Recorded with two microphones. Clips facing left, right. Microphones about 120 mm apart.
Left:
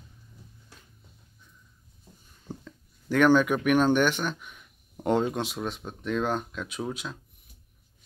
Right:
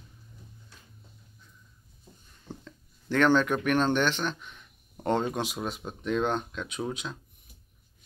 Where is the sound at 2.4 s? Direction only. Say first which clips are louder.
Left 2 dB; 10° left (ahead or behind).